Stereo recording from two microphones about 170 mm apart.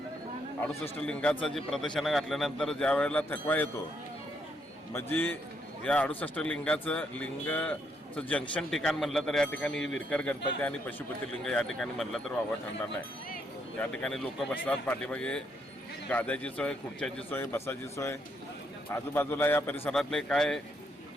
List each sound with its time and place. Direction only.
0.7 s speech: 5° left (ahead or behind)
4.9 s a man's voice: 10° left (ahead or behind)
13.7 s a man's voice: 5° left (ahead or behind)